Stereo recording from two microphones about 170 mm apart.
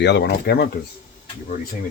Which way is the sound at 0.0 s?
90° left.